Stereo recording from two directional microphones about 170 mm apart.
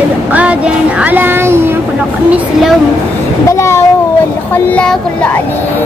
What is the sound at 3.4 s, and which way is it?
Speech, 15° left (ahead or behind).